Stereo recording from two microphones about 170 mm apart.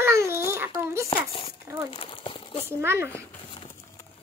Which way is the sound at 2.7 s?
15° right (ahead or behind).